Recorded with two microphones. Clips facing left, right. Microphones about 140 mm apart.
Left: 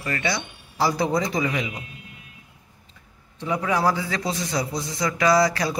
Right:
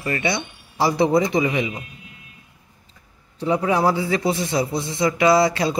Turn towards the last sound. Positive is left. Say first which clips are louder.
# right 3 dB
turn(degrees=-25)  # may be behind; listen again after turning